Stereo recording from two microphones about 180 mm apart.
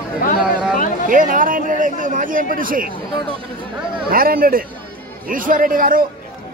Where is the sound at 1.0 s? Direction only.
50° right (ahead or behind).